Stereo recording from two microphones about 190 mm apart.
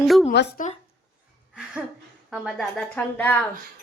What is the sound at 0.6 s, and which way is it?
Speech, 45° left (ahead or behind).